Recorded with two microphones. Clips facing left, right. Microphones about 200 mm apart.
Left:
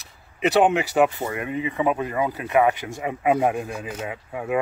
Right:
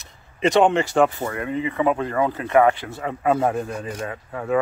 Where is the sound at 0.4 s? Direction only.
5° left (ahead or behind).